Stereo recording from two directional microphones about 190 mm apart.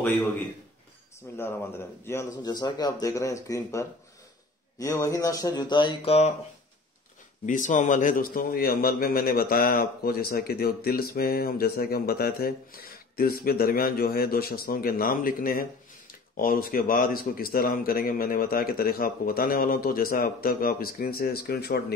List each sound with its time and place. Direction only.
1.3 s speech: 10° left (ahead or behind); by 6.3 s 30° left (ahead or behind)
7.4 s a man's voice: 40° left (ahead or behind)